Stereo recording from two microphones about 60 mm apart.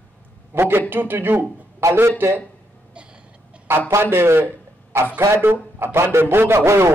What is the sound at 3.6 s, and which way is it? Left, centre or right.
A man's voice, right.